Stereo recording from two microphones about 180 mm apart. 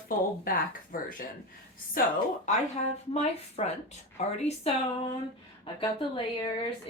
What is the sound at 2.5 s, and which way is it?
A woman's voice, 40° left (ahead or behind).